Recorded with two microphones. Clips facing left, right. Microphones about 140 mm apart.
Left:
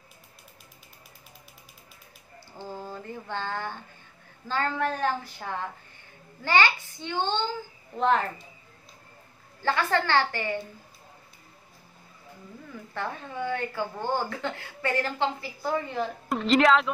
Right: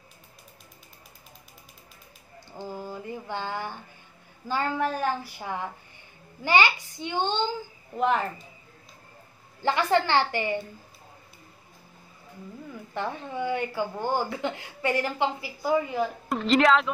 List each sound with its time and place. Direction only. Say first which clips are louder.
2.6 s a sound: right 2 dB; 10° right (ahead or behind)
4.5 s speech: right 1 dB; 10° right (ahead or behind)
9.6 s speech: right 3 dB; 20° right (ahead or behind)
12.9 s speech: right 2 dB; 20° right (ahead or behind); by 16.9 s centre (ahead or behind)